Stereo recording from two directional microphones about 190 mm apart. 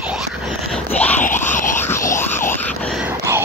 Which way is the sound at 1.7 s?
15° left (ahead or behind).